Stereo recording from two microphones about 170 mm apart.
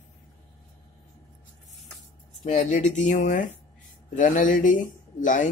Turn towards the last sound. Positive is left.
turn(degrees=50)  # may be behind; listen again after turning